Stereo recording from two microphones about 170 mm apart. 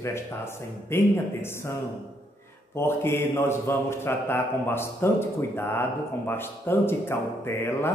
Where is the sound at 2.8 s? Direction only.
15° left (ahead or behind).